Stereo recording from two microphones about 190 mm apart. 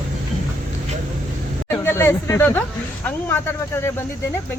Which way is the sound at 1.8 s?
10° left (ahead or behind).